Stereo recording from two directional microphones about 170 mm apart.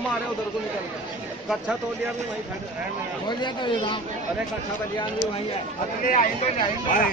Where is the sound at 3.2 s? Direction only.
25° left (ahead or behind).